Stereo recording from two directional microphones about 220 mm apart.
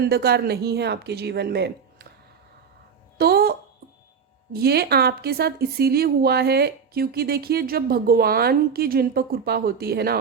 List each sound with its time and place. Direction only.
0.0 s speech: 45° right (ahead or behind)
3.2 s a sound: 45° right (ahead or behind)
4.5 s speech: 45° right (ahead or behind)